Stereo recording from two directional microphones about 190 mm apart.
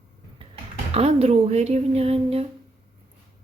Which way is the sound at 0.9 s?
35° right (ahead or behind).